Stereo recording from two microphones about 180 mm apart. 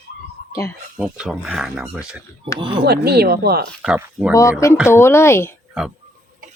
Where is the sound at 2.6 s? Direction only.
25° right (ahead or behind).